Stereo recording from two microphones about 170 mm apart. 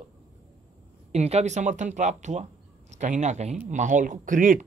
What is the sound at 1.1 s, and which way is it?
Speech, 40° right (ahead or behind).